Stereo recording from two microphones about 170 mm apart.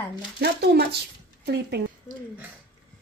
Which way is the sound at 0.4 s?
70° right (ahead or behind).